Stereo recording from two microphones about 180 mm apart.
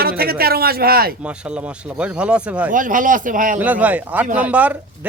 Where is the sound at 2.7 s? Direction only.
45° right (ahead or behind).